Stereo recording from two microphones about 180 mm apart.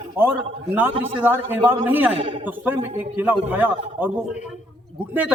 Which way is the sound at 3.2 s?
10° right (ahead or behind).